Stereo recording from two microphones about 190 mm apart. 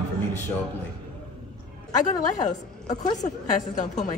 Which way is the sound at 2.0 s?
40° left (ahead or behind).